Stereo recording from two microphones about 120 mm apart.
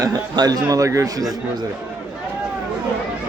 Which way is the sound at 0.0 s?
35° right (ahead or behind).